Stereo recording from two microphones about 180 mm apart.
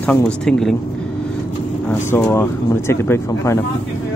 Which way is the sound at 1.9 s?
15° left (ahead or behind).